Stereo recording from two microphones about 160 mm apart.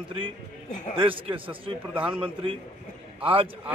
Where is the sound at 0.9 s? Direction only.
35° right (ahead or behind).